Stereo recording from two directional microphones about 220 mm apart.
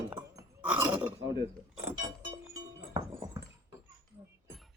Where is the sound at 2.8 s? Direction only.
15° right (ahead or behind).